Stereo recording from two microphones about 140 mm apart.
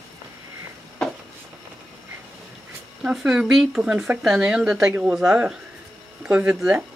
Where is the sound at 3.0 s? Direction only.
5° right (ahead or behind).